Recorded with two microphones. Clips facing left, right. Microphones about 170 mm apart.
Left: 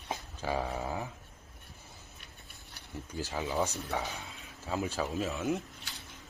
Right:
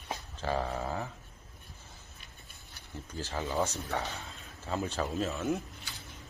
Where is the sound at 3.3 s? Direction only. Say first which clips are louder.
Right 1 dB; 10° left (ahead or behind).